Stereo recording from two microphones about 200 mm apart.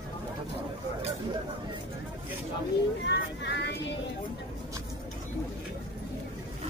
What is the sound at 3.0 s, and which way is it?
Speech, 60° left (ahead or behind).